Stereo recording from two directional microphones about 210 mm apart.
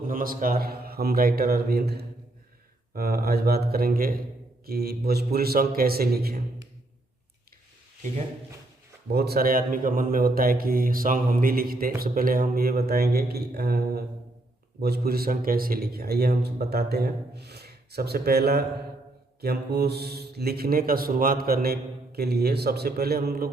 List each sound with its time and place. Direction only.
0.0 s speech: 40° right (ahead or behind)
9.1 s speech: 50° right (ahead or behind)